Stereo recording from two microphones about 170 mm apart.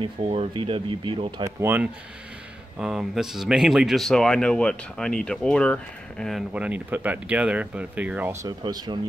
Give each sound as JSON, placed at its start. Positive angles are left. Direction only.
{"t": 0.0, "sound": "speech", "side_deg": -35}
{"t": 1.4, "sound": "speech", "side_deg": -15}
{"t": 2.8, "sound": "speech", "side_deg": 0}